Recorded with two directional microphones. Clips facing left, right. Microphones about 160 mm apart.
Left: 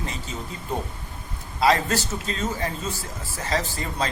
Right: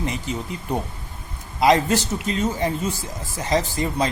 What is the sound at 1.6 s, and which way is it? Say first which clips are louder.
Speech: right 4 dB; 20° right (ahead or behind).